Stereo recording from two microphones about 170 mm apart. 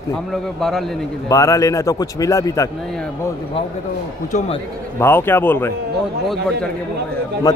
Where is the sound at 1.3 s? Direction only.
20° left (ahead or behind).